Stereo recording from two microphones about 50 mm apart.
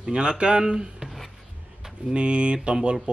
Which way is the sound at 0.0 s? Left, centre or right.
Centre.